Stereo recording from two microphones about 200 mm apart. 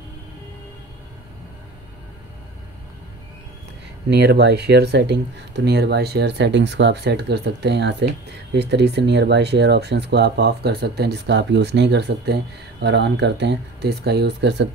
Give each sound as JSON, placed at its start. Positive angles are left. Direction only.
{"t": 4.1, "sound": "speech", "side_deg": -55}